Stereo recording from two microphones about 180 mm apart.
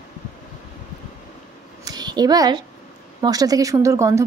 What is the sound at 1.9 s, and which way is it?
A child's voice, 20° right (ahead or behind).